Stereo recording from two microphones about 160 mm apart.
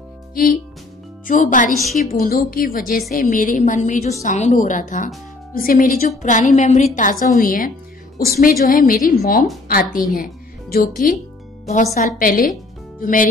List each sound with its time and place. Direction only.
0.3 s music: 65° left (ahead or behind)
1.2 s a woman's voice: 55° left (ahead or behind)
1.7 s a woman's voice: centre (ahead or behind)
2.0 s a woman's voice: 65° left (ahead or behind)
8.3 s a woman's voice: 70° left (ahead or behind)
11.6 s speech: 45° left (ahead or behind)
12.2 s a woman's voice: 60° left (ahead or behind)